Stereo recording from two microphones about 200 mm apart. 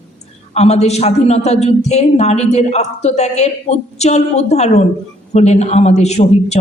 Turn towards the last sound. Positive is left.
turn(degrees=35)  # may be behind; listen again after turning